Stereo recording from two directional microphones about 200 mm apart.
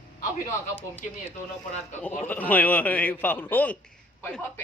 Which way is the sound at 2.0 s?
10° left (ahead or behind).